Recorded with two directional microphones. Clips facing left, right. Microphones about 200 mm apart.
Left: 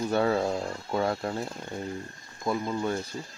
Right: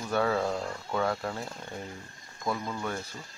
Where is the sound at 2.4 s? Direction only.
20° left (ahead or behind).